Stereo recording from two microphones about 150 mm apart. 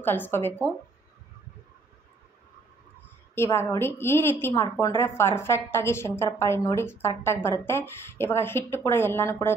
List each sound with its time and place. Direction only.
0.0 s a woman's voice: 15° left (ahead or behind)
3.3 s a woman's voice: 15° left (ahead or behind)